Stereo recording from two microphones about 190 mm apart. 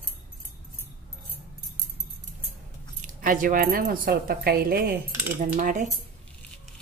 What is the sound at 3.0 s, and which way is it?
Speech, 45° right (ahead or behind).